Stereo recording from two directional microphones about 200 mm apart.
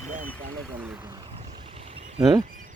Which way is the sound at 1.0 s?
20° right (ahead or behind).